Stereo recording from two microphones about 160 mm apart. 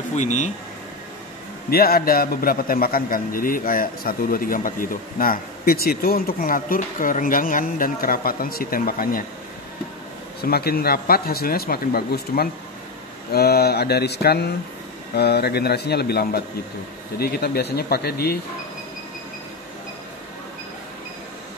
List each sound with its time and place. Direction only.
0.1 s speech: 50° left (ahead or behind)
1.7 s a man's voice: 70° left (ahead or behind)
10.4 s a man's voice: 75° left (ahead or behind)
17.2 s speech: 90° left; by 18.4 s 70° left (ahead or behind)